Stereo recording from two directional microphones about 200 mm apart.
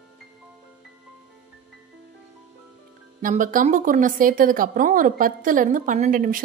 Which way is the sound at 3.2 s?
40° right (ahead or behind).